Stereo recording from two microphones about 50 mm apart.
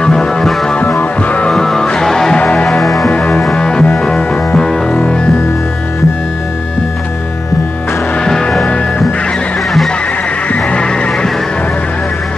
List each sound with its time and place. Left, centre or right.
0.0 s music: centre
0.9 s music: left
1.5 s music: centre
2.3 s music: left
2.8 s music: centre
3.1 s music: left
3.5 s music: centre
4.6 s double bass: centre
8.3 s music: centre
10.5 s vehicle: left